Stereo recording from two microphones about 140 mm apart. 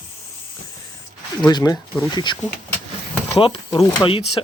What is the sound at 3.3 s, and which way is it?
Speech, 40° left (ahead or behind).